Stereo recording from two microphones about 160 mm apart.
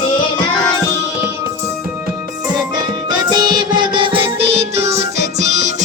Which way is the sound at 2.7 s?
25° right (ahead or behind).